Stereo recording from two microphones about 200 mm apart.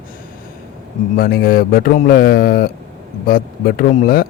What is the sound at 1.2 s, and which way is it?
Speech, 50° left (ahead or behind).